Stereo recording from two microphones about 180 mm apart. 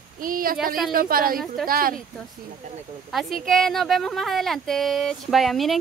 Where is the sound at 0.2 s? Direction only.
50° right (ahead or behind).